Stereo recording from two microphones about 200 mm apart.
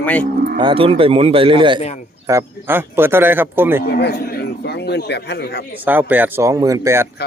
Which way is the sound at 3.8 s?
55° left (ahead or behind).